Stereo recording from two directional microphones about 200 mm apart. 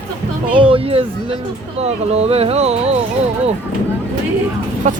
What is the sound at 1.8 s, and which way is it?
Speech, 30° right (ahead or behind).